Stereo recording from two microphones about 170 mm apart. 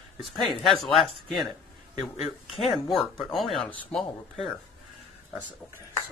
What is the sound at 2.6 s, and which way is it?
Speech, centre (ahead or behind).